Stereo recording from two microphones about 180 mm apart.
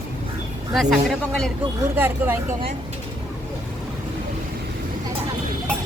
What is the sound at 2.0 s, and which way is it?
Speech, 10° right (ahead or behind).